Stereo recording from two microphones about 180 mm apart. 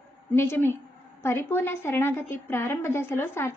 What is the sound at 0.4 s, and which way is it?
A woman's voice, 15° left (ahead or behind).